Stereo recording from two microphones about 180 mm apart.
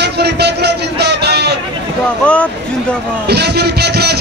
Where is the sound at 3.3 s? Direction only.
65° right (ahead or behind).